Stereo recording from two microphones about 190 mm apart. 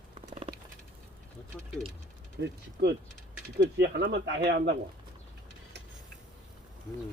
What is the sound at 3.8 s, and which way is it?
Speech, 65° right (ahead or behind).